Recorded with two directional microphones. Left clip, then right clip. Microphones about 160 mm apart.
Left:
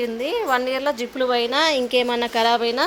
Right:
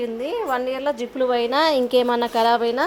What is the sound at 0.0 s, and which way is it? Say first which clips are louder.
A woman's voice: left 2 dB; centre (ahead or behind).